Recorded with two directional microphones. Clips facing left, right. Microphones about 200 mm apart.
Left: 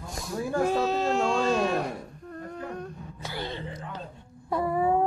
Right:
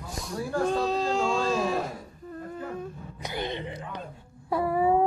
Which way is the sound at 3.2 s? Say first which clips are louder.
Right 3 dB; 20° right (ahead or behind).